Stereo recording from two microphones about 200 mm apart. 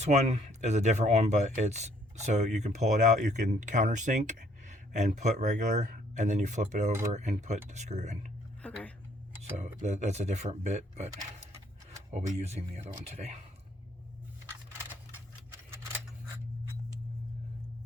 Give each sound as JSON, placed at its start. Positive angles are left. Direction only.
{"t": 0.0, "sound": "speech", "side_deg": -35}
{"t": 8.6, "sound": "a sound", "side_deg": 5}
{"t": 9.6, "sound": "speech", "side_deg": -35}
{"t": 12.1, "sound": "speech", "side_deg": -35}